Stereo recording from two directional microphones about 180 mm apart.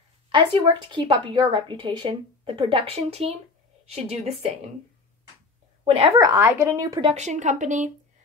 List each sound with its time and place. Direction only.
0.3 s a woman's voice: 25° right (ahead or behind)
6.1 s a woman's voice: 20° right (ahead or behind)
7.2 s a woman's voice: 40° right (ahead or behind)